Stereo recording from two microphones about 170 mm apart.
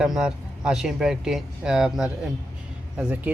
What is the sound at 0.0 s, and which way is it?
Speech, 5° right (ahead or behind).